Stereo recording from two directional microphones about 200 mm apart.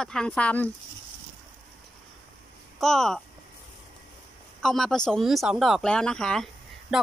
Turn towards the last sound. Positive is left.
turn(degrees=5)  # may be behind; listen again after turning